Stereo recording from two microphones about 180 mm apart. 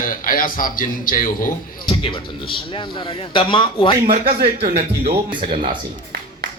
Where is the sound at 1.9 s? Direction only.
30° left (ahead or behind).